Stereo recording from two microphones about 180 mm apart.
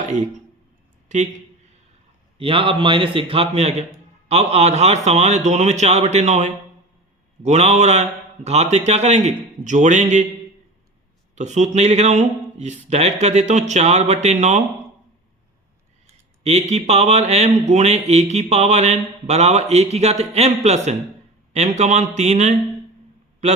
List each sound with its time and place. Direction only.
1.0 s speech: 40° right (ahead or behind)
2.4 s speech: 30° right (ahead or behind)
11.3 s speech: 40° right (ahead or behind)
16.5 s speech: 40° right (ahead or behind)